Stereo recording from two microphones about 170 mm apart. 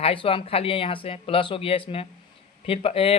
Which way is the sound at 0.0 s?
35° left (ahead or behind).